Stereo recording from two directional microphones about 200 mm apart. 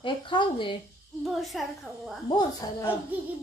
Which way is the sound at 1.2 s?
Centre (ahead or behind).